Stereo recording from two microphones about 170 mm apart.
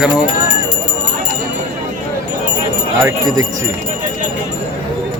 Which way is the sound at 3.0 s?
20° right (ahead or behind).